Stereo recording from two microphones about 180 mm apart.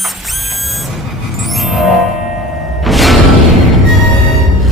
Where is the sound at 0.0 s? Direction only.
Centre (ahead or behind).